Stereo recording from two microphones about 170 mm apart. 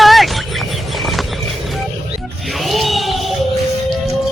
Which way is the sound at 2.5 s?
Centre (ahead or behind).